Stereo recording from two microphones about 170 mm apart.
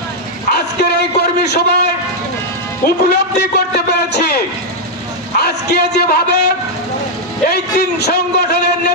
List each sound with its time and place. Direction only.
0.5 s bow-wow: 70° left (ahead or behind)
1.2 s a sound: 75° left (ahead or behind)
2.8 s a man's voice: 70° left (ahead or behind)
5.4 s a man's voice: 75° left (ahead or behind)
7.4 s a man's voice: 70° left (ahead or behind)